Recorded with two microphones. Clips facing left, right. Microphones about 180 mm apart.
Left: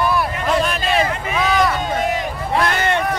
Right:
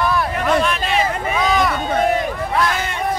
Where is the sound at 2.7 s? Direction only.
65° left (ahead or behind).